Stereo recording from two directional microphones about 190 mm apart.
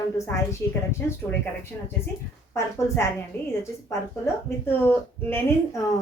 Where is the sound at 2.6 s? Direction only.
15° left (ahead or behind).